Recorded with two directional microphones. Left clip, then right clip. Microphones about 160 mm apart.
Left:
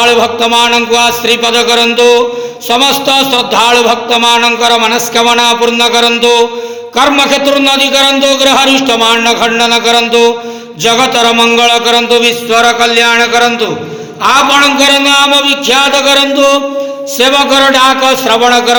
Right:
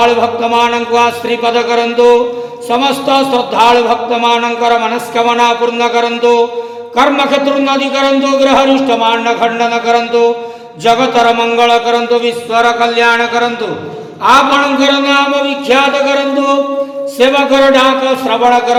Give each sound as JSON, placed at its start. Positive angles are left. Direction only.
{"t": 0.0, "sound": "a man's voice", "side_deg": 20}
{"t": 10.8, "sound": "a sound", "side_deg": 20}
{"t": 17.2, "sound": "a man's voice", "side_deg": 20}